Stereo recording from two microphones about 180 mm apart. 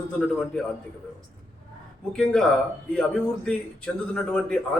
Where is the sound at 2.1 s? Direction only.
5° left (ahead or behind).